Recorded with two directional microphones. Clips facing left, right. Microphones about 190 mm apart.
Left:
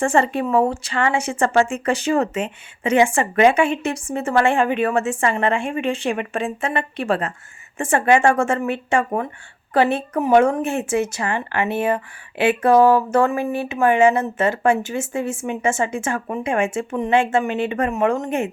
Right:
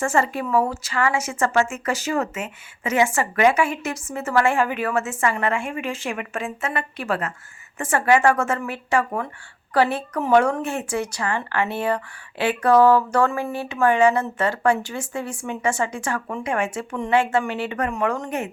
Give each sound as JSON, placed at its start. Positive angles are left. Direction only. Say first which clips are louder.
{"t": 0.0, "sound": "a woman's voice", "louder": "left 4 dB", "side_deg": 30}